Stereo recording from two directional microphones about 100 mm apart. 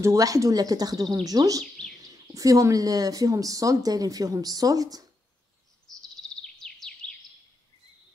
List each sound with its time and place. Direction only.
0.0 s speech: 35° right (ahead or behind)
5.9 s chirp: 5° left (ahead or behind)
6.4 s bird vocalization: 5° left (ahead or behind)